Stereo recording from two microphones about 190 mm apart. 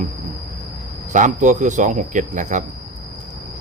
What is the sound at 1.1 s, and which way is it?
Speech, 40° right (ahead or behind).